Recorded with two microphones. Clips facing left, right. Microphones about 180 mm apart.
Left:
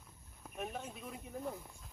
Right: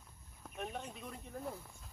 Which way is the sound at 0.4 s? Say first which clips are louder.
Left 1 dB; 5° left (ahead or behind).